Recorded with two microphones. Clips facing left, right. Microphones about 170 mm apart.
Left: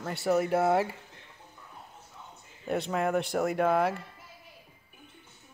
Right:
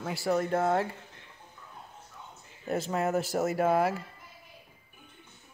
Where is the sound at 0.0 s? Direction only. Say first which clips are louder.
Left 2 dB; centre (ahead or behind).